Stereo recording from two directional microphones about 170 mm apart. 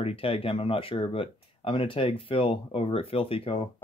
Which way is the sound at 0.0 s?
35° left (ahead or behind).